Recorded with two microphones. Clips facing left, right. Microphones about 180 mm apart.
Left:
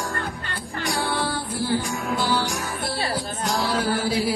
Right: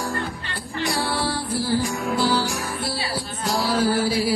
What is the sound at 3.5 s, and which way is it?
Music, centre (ahead or behind).